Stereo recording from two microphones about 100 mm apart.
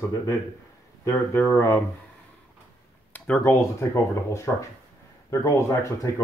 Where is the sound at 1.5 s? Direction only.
25° left (ahead or behind).